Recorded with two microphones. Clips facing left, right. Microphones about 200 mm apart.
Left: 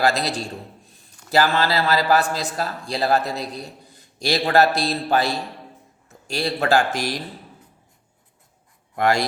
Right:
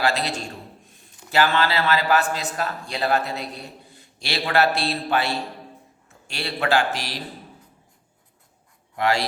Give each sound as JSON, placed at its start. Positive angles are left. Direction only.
{"t": 0.0, "sound": "a man's voice", "side_deg": 40}
{"t": 9.0, "sound": "speech", "side_deg": 50}